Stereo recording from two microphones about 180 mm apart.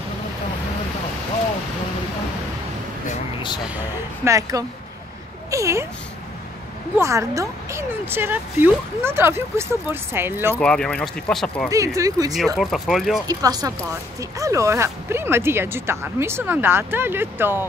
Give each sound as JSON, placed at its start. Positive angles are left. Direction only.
{"t": 3.6, "sound": "speech", "side_deg": -10}
{"t": 7.0, "sound": "speech", "side_deg": -15}
{"t": 10.6, "sound": "speech", "side_deg": 5}
{"t": 11.7, "sound": "speech", "side_deg": -15}
{"t": 12.5, "sound": "speech", "side_deg": 0}
{"t": 13.3, "sound": "speech", "side_deg": -20}